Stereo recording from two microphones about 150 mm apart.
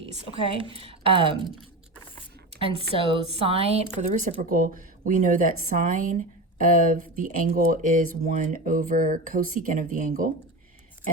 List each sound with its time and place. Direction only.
0.7 s speech: 40° right (ahead or behind)
2.6 s speech: 40° right (ahead or behind)
4.1 s speech: 55° right (ahead or behind)